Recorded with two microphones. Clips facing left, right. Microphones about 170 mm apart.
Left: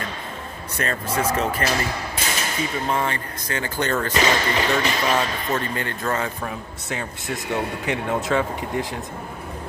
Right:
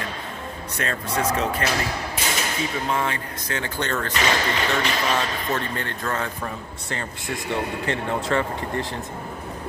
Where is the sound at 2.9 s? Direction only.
Centre (ahead or behind).